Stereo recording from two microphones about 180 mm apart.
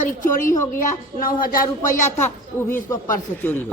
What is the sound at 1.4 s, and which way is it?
Speech, 50° left (ahead or behind).